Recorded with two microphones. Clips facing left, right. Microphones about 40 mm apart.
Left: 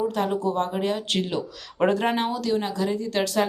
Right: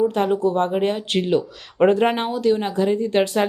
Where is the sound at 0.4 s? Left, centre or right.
Right.